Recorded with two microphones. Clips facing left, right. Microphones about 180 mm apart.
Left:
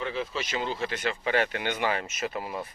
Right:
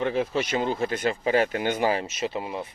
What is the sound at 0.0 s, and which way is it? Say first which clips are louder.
Speech: right 7 dB; 45° right (ahead or behind).